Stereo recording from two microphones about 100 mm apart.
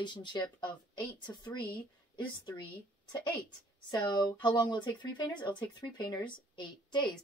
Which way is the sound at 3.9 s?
50° left (ahead or behind).